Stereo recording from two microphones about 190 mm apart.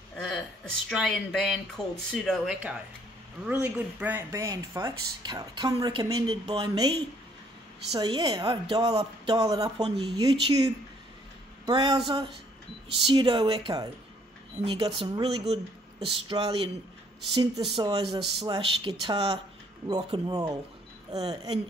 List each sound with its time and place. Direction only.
0.8 s speech: centre (ahead or behind); by 12.0 s 20° right (ahead or behind)
13.0 s speech: 25° right (ahead or behind)